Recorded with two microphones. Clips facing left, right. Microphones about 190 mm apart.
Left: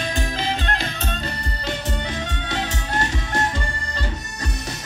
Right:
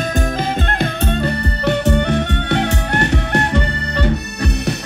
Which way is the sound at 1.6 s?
65° right (ahead or behind).